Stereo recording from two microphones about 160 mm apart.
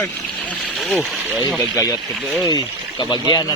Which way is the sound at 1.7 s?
20° left (ahead or behind).